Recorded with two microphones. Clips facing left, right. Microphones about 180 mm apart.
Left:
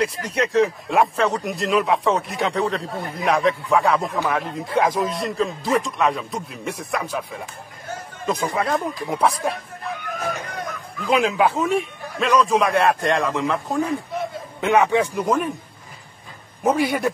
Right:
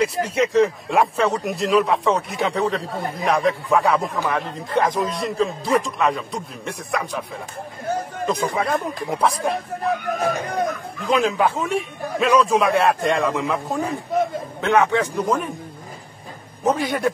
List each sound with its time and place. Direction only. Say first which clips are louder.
0.0 s speech: right 3 dB; centre (ahead or behind)
8.3 s speech: even; centre (ahead or behind)
10.2 s speech: right 5 dB; 40° right (ahead or behind)
11.1 s speech: even; 5° left (ahead or behind)
14.6 s a man's voice: left 1 dB; 15° left (ahead or behind)
16.6 s a man's voice: left 1 dB; 10° left (ahead or behind)